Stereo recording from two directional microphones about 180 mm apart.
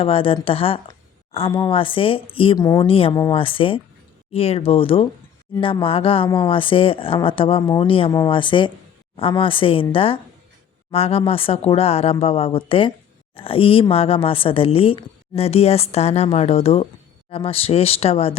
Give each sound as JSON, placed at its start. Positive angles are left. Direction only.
{"t": 0.0, "sound": "a woman's voice", "side_deg": 30}